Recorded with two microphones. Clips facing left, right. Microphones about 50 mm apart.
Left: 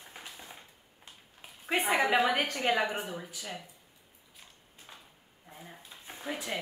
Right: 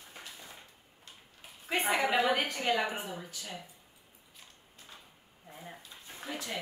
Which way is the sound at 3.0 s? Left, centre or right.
Centre.